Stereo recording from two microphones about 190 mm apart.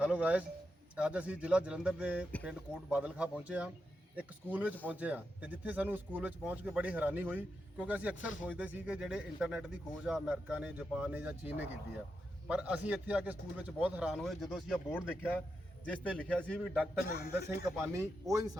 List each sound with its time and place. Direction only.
0.0 s a man's voice: 5° right (ahead or behind)
17.1 s speech: 55° left (ahead or behind)
17.9 s speech: 15° right (ahead or behind)